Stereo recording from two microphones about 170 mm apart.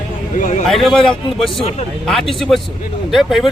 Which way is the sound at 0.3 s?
50° left (ahead or behind).